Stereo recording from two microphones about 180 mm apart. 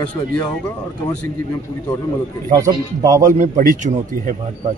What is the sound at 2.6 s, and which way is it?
Speech, 20° right (ahead or behind).